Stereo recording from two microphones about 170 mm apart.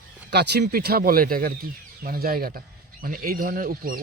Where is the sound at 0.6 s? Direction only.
60° right (ahead or behind).